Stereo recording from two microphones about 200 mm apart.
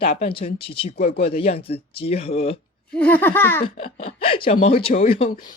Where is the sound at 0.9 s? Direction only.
50° left (ahead or behind).